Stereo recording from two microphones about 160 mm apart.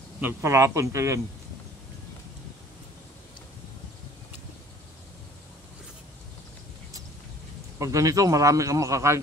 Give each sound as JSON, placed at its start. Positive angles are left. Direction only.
{"t": 0.2, "sound": "a man's voice", "side_deg": -20}
{"t": 7.8, "sound": "a man's voice", "side_deg": -20}